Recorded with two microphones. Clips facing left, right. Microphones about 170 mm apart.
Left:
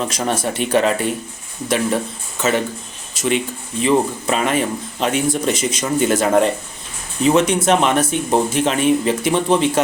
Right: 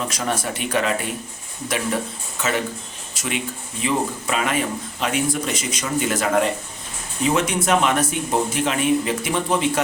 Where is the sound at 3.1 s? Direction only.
25° left (ahead or behind).